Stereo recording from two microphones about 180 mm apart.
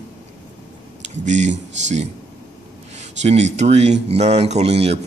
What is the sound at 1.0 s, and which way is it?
Speech, 40° right (ahead or behind).